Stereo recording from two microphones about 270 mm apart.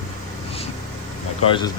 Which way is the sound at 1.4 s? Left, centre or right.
Centre.